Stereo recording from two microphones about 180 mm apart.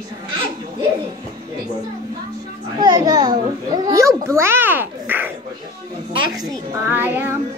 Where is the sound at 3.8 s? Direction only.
15° right (ahead or behind).